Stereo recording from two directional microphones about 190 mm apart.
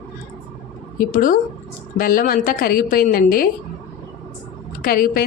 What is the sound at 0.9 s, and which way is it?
A woman's voice, 45° left (ahead or behind).